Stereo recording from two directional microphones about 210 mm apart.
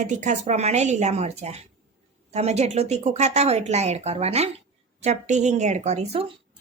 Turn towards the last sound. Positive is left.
turn(degrees=-30)  # may be behind; listen again after turning